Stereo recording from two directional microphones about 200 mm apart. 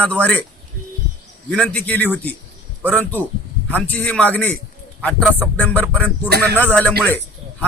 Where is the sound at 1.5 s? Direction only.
5° left (ahead or behind).